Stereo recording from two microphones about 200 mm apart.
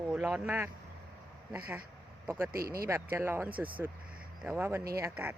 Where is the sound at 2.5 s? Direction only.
50° right (ahead or behind).